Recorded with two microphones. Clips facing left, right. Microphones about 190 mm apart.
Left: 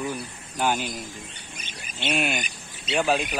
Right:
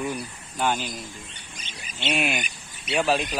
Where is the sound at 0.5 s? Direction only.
5° left (ahead or behind).